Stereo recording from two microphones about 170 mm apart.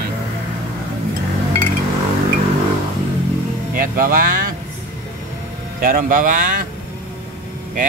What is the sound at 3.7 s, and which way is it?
Speech, 55° right (ahead or behind).